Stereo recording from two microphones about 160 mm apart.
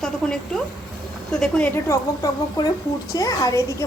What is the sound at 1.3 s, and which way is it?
Speech, 5° left (ahead or behind).